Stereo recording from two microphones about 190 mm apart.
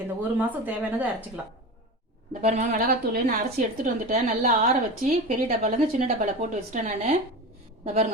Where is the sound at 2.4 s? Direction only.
35° right (ahead or behind).